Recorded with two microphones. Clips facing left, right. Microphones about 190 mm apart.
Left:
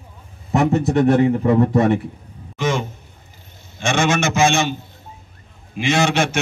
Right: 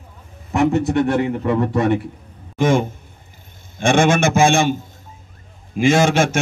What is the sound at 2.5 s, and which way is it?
A man's voice, 50° right (ahead or behind).